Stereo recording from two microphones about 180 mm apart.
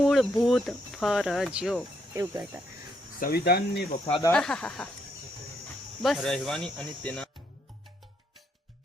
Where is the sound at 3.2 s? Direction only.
60° left (ahead or behind).